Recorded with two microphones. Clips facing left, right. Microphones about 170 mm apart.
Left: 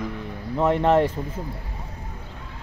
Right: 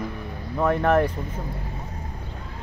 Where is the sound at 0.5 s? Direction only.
20° left (ahead or behind).